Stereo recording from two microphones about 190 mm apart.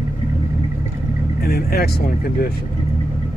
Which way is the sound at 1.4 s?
55° left (ahead or behind).